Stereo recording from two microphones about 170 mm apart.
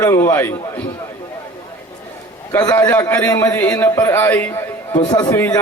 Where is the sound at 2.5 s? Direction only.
20° left (ahead or behind).